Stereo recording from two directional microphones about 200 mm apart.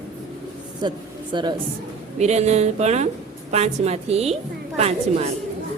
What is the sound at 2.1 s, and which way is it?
Speech, 35° right (ahead or behind).